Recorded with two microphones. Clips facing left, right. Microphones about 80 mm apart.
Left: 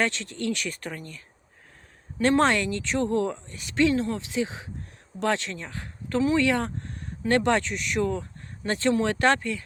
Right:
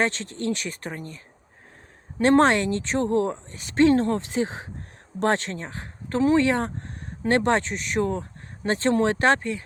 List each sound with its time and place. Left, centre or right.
0.0 s speech: right
2.2 s speech: right